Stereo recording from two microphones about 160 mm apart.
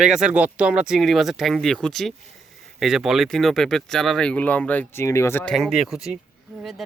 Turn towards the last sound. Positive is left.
turn(degrees=0)  # may be behind; listen again after turning